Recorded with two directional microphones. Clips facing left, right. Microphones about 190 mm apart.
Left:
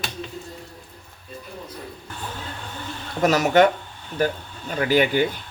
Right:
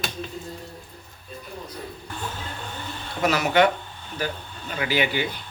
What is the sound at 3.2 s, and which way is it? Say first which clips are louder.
Speech: left 3 dB; 45° left (ahead or behind).